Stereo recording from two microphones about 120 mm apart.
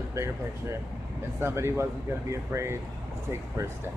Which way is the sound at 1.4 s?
20° right (ahead or behind).